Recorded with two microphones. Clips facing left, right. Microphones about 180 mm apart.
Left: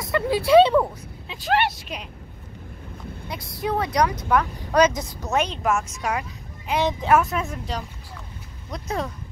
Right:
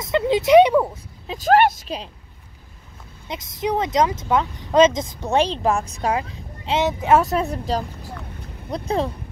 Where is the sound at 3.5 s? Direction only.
20° right (ahead or behind).